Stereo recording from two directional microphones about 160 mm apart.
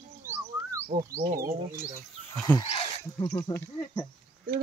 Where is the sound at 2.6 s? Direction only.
40° left (ahead or behind).